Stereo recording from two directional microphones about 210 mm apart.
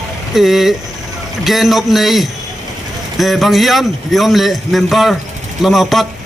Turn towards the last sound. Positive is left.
turn(degrees=0)  # may be behind; listen again after turning